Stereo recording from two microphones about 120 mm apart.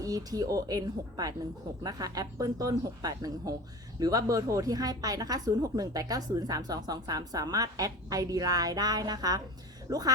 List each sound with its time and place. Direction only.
0.0 s speech: 30° right (ahead or behind)